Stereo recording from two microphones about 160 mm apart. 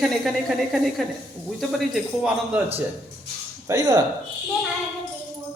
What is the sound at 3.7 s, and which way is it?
Speech, 25° right (ahead or behind).